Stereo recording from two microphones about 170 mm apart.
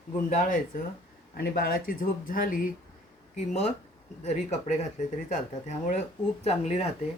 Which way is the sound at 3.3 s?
45° left (ahead or behind).